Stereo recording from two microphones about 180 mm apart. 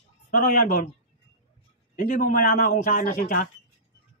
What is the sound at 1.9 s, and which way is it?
Speech, 45° left (ahead or behind).